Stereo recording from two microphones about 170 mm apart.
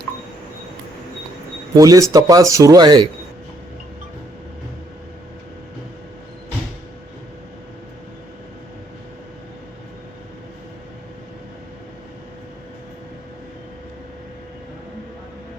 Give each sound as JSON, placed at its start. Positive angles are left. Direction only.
{"t": 1.7, "sound": "speech", "side_deg": -20}